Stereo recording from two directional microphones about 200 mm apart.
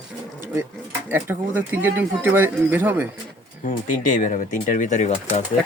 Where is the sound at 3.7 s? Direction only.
40° left (ahead or behind).